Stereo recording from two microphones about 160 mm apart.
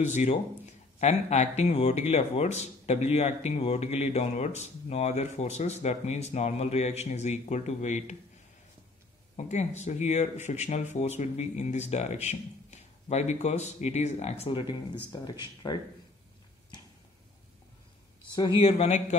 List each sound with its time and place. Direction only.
0.1 s speech: 50° left (ahead or behind)
9.4 s speech: 45° left (ahead or behind)
14.6 s speech: 30° left (ahead or behind)
18.3 s a man's voice: 30° left (ahead or behind); by 19.1 s 50° left (ahead or behind)